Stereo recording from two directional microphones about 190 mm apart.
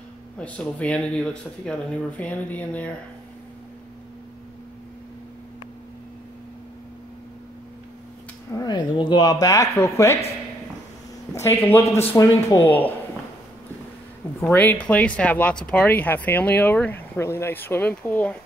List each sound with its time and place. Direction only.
0.4 s speech: 5° left (ahead or behind)
8.5 s speech: 20° left (ahead or behind)
11.3 s speech: 10° left (ahead or behind)
14.4 s speech: 10° left (ahead or behind)